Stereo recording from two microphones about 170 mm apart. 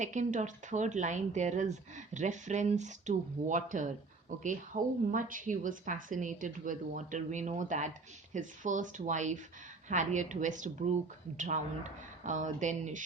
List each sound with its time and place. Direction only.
0.0 s a woman's voice: 45° right (ahead or behind)